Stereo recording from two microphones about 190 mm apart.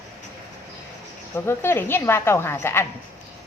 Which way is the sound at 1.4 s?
10° left (ahead or behind).